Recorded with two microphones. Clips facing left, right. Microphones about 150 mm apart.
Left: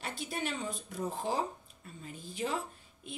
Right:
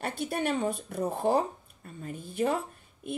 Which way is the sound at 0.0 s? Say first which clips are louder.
Right 7 dB; 60° right (ahead or behind).